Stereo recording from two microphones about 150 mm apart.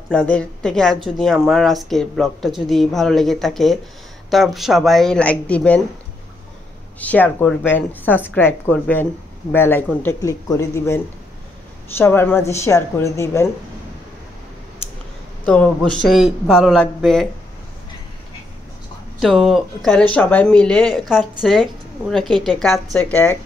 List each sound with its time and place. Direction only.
0.1 s speech: 5° left (ahead or behind)
7.0 s a woman's voice: 10° left (ahead or behind)
12.0 s a woman's voice: 15° left (ahead or behind)
15.4 s speech: 10° left (ahead or behind)
19.1 s speech: centre (ahead or behind)
22.9 s a woman's voice: 10° left (ahead or behind)